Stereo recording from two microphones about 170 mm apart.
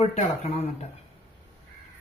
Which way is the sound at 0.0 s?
40° left (ahead or behind).